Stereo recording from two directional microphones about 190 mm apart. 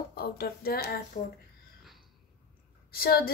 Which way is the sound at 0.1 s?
55° left (ahead or behind).